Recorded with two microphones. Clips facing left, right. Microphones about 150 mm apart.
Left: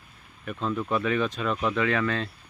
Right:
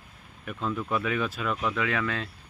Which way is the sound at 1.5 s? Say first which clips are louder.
Left 3 dB; 20° left (ahead or behind).